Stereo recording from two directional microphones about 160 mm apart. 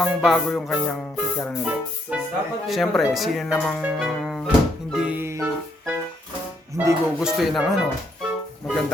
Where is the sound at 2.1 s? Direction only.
5° right (ahead or behind).